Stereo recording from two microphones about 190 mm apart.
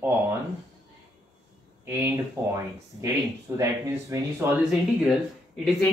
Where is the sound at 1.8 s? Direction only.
15° right (ahead or behind).